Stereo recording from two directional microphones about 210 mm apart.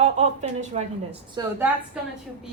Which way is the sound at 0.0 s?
35° right (ahead or behind).